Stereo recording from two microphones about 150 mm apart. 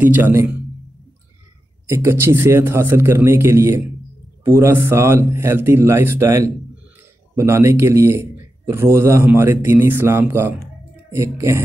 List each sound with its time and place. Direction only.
0.0 s a man's voice: 10° right (ahead or behind)
1.9 s a man's voice: 15° right (ahead or behind)